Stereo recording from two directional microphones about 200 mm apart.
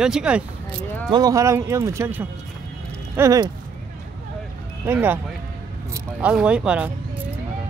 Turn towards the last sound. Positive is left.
turn(degrees=-5)  # may be behind; listen again after turning